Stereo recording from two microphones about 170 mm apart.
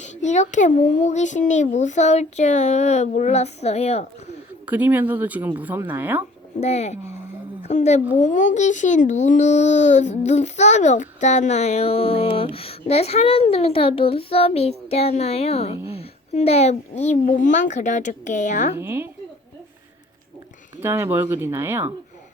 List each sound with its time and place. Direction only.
0.0 s speech: 40° left (ahead or behind)
4.6 s speech: 10° right (ahead or behind)
6.6 s a child's voice: 40° left (ahead or behind)
18.8 s speech: 15° right (ahead or behind)
20.8 s speech: 15° right (ahead or behind)